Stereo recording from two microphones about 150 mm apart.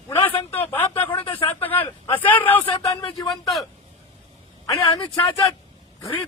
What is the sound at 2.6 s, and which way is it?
Speech, 30° left (ahead or behind).